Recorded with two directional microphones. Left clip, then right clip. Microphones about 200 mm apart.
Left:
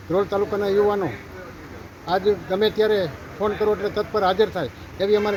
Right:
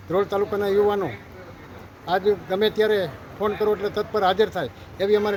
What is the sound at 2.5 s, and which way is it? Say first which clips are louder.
Speech: left 1 dB; 5° right (ahead or behind).